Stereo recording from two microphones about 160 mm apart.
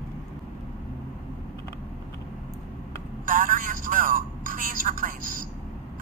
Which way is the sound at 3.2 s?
60° right (ahead or behind).